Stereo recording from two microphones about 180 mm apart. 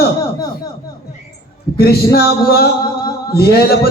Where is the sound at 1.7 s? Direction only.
60° left (ahead or behind).